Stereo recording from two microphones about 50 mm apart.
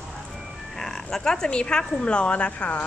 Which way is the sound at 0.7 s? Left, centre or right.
Centre.